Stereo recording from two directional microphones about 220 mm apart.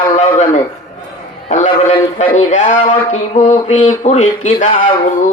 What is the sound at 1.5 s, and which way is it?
Speech, 25° left (ahead or behind).